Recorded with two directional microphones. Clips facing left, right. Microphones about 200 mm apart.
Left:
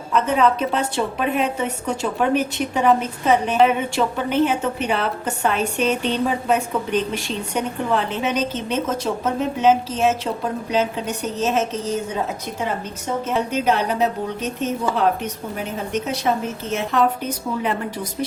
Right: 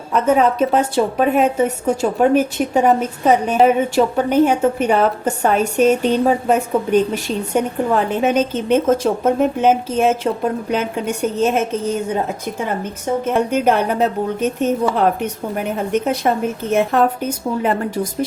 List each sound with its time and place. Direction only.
0.1 s a woman's voice: 45° right (ahead or behind)
12.8 s a woman's voice: 55° right (ahead or behind)